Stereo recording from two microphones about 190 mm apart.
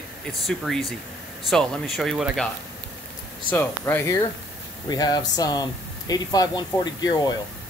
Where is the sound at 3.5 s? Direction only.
10° left (ahead or behind).